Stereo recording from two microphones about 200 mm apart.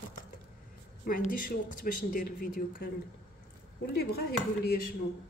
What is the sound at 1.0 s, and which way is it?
Speech, 45° left (ahead or behind).